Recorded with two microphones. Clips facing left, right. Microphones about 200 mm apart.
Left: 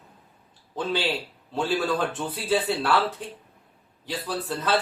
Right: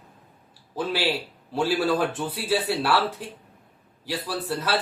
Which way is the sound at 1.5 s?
10° right (ahead or behind).